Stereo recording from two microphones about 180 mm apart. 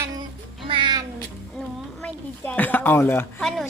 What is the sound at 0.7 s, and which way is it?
Cat, 25° right (ahead or behind).